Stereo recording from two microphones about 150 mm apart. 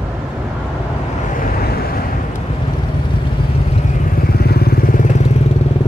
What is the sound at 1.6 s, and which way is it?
Waves, 90° left.